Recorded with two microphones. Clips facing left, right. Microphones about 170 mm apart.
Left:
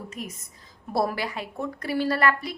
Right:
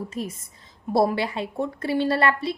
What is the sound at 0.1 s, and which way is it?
A woman's voice, 30° right (ahead or behind).